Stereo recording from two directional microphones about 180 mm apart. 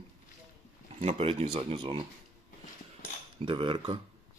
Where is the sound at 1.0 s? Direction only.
35° right (ahead or behind).